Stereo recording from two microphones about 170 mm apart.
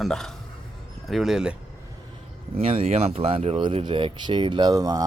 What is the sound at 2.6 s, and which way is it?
Speech, 35° right (ahead or behind).